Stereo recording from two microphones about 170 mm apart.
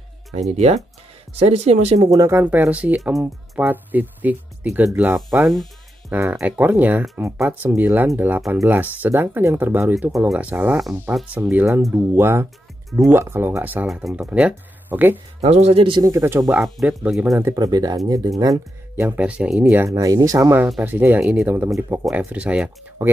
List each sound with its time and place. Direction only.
0.3 s speech: 40° right (ahead or behind)
2.0 s speech: 20° right (ahead or behind); by 5.7 s centre (ahead or behind)
6.0 s speech: 15° right (ahead or behind)
15.4 s speech: 40° right (ahead or behind)
16.0 s speech: 15° right (ahead or behind)
16.6 s speech: 5° right (ahead or behind)
17.4 s speech: 20° right (ahead or behind)